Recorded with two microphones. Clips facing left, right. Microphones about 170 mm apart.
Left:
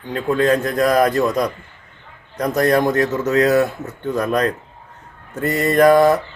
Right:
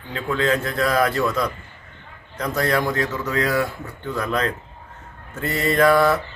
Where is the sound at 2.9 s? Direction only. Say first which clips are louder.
Left 7 dB; 40° left (ahead or behind).